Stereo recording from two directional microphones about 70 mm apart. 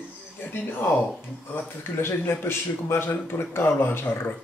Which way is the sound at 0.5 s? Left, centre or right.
Left.